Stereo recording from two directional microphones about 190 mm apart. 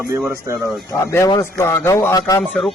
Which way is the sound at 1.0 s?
15° left (ahead or behind).